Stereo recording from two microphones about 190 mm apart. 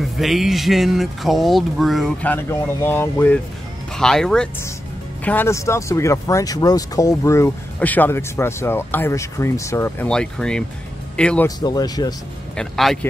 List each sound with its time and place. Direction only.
0.0 s speech: centre (ahead or behind)
11.4 s speech: 20° left (ahead or behind)
12.5 s speech: centre (ahead or behind)